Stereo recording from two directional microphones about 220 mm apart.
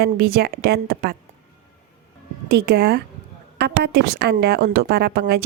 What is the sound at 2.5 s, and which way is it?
A woman's voice, 45° right (ahead or behind).